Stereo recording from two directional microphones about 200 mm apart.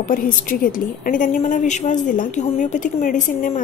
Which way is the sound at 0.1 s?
45° left (ahead or behind).